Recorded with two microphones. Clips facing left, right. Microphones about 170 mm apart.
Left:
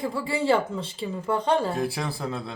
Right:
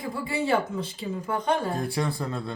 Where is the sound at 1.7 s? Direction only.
Centre (ahead or behind).